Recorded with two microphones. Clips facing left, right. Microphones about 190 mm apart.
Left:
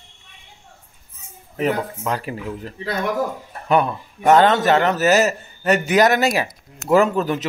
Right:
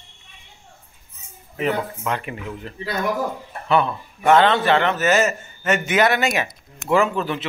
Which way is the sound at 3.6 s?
45° left (ahead or behind).